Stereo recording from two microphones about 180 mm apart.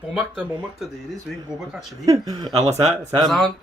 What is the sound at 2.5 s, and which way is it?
Speech, 35° right (ahead or behind).